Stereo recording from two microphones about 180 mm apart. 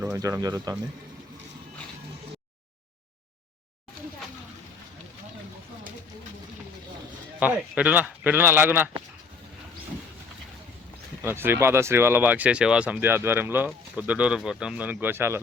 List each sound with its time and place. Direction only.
0.0 s speech: 15° right (ahead or behind)
7.3 s speech: 10° right (ahead or behind)
11.2 s speech: 10° right (ahead or behind)